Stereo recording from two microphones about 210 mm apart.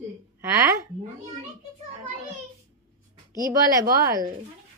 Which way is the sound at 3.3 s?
15° right (ahead or behind).